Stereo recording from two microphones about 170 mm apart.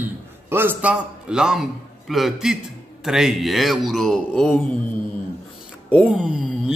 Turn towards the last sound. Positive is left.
turn(degrees=-5)  # may be behind; listen again after turning